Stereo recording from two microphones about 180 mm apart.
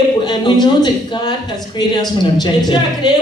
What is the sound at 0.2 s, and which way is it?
A man's voice, 25° left (ahead or behind).